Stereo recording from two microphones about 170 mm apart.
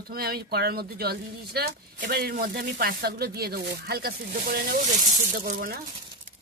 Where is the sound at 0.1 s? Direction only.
60° right (ahead or behind).